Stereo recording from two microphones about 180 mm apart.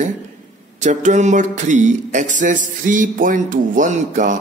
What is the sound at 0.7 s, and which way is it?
A man's voice, 40° right (ahead or behind).